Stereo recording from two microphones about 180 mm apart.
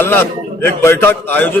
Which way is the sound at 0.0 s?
10° left (ahead or behind).